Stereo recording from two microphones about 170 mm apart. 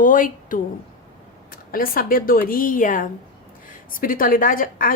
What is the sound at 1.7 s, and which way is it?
A woman's voice, 60° left (ahead or behind).